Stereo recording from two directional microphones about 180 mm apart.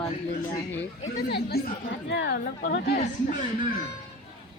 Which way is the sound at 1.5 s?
60° left (ahead or behind).